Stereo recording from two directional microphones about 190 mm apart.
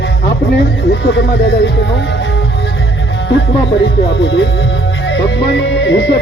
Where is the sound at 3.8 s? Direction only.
65° left (ahead or behind).